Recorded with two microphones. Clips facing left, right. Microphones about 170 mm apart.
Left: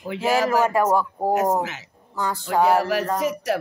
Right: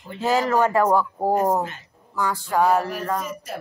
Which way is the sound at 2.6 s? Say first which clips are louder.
Left 2 dB; 80° left.